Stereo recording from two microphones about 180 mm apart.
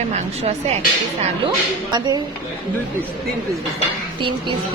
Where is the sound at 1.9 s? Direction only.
20° right (ahead or behind).